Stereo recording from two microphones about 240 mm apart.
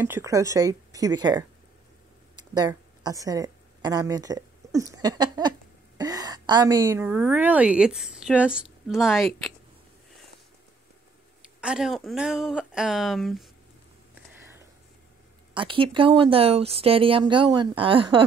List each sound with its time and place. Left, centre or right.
0.0 s speech: centre
2.5 s a woman's voice: centre
11.6 s speech: centre
15.5 s speech: right